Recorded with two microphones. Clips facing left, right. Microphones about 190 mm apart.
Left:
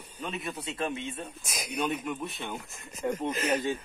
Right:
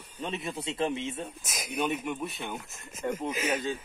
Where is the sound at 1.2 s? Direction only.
Centre (ahead or behind).